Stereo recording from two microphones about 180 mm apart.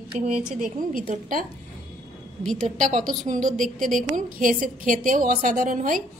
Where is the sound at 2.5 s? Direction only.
40° right (ahead or behind).